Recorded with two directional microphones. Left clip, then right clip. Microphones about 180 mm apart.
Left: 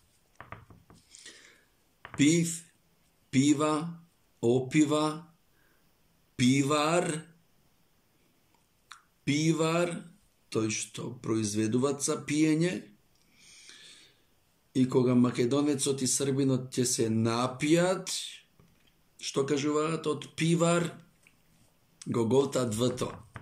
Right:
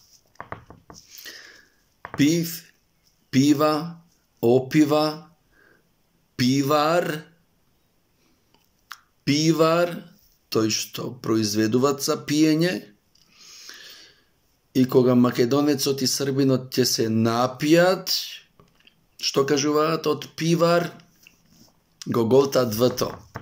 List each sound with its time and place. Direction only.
0.4 s a sound: 25° right (ahead or behind)
1.1 s sniff: 15° left (ahead or behind)
2.1 s speech: 15° left (ahead or behind)
6.3 s speech: 15° left (ahead or behind)
8.8 s speech: 15° left (ahead or behind)
13.4 s a sound: 15° left (ahead or behind)
14.7 s speech: 15° left (ahead or behind)
21.9 s speech: 15° left (ahead or behind)